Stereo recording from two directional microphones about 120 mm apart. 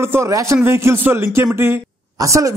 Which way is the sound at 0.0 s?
20° right (ahead or behind).